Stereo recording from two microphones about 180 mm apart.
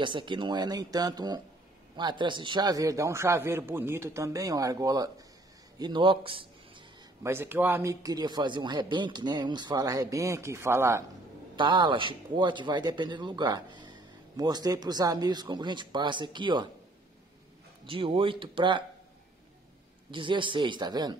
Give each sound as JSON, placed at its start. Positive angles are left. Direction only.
{"t": 0.0, "sound": "speech", "side_deg": -25}
{"t": 7.2, "sound": "speech", "side_deg": -10}
{"t": 11.5, "sound": "speech", "side_deg": -25}
{"t": 17.8, "sound": "speech", "side_deg": -30}
{"t": 20.1, "sound": "speech", "side_deg": -25}